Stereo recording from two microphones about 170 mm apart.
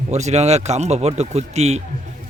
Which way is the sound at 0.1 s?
40° right (ahead or behind).